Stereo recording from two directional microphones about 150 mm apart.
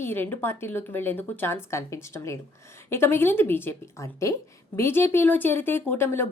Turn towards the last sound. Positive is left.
turn(degrees=15)  # may be behind; listen again after turning